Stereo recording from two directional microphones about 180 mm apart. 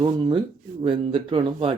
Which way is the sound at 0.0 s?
25° right (ahead or behind).